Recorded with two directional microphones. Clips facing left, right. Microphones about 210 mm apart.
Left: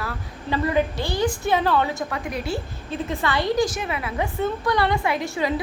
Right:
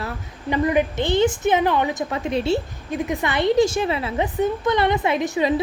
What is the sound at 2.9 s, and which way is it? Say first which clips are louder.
A woman's voice: right 2 dB; 15° right (ahead or behind).